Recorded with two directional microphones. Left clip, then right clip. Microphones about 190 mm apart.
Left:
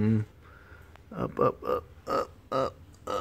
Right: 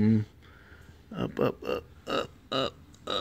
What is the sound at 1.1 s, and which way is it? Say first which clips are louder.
Speech: left 3 dB; 20° right (ahead or behind).